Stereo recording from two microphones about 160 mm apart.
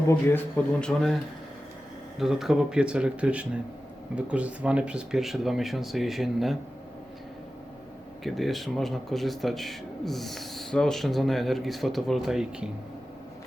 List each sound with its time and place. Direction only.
0.8 s a man's voice: 5° left (ahead or behind)
2.1 s a man's voice: centre (ahead or behind)
8.2 s a man's voice: centre (ahead or behind)